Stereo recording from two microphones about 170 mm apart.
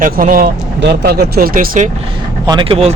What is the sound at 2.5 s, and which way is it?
Speech, 30° right (ahead or behind).